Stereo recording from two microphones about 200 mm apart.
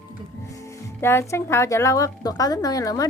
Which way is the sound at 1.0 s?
10° left (ahead or behind).